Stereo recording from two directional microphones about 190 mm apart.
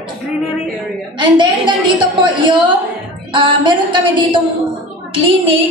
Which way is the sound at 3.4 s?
25° right (ahead or behind).